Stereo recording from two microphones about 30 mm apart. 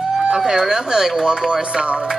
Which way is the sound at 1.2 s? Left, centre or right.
Right.